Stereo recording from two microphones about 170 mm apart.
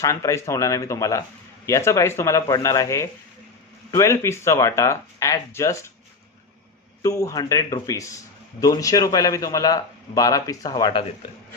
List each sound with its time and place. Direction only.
0.0 s a man's voice: 20° left (ahead or behind)
7.0 s a man's voice: 20° left (ahead or behind)